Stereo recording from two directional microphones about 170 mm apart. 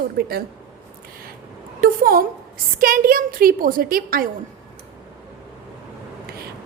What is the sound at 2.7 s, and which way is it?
A woman's voice, 55° right (ahead or behind).